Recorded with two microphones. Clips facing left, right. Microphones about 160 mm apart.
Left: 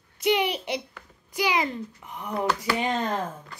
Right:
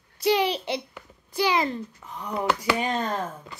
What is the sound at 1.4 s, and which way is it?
Speech, 15° left (ahead or behind).